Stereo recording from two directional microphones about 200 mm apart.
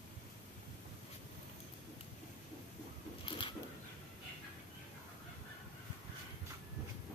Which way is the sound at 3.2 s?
25° left (ahead or behind).